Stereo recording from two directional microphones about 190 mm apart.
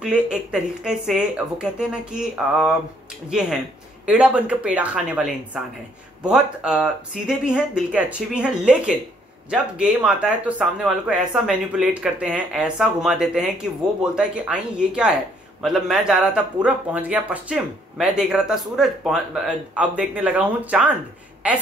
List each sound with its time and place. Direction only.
0.0 s speech: 5° right (ahead or behind)